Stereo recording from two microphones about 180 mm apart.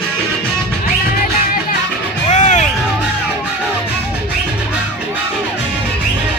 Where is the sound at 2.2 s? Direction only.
40° left (ahead or behind).